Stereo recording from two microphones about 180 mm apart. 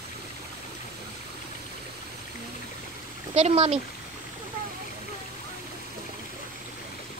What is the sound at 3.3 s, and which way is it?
Speech, 35° right (ahead or behind).